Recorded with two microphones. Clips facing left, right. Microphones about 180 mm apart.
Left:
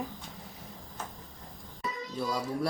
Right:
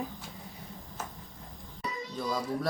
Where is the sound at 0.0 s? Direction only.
Centre (ahead or behind).